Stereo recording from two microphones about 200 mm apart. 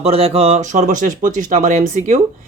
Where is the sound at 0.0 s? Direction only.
30° right (ahead or behind).